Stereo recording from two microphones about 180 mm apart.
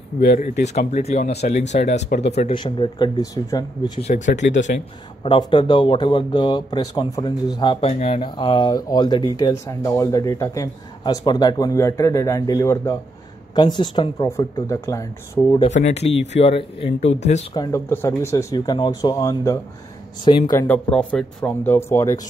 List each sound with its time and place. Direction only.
0.7 s speech: 40° left (ahead or behind); by 4.0 s 20° left (ahead or behind)
4.4 s speech: 90° left
5.2 s speech: 30° left (ahead or behind)
15.6 s speech: 35° left (ahead or behind)
17.6 s speech: 15° left (ahead or behind)
20.6 s speech: 10° left (ahead or behind)